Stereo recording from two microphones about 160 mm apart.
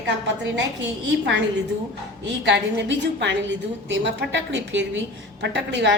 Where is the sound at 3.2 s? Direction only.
90° right.